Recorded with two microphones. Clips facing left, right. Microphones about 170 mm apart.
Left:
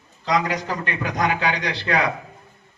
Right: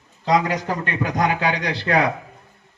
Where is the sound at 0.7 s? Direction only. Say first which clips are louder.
Right 2 dB; 45° right (ahead or behind).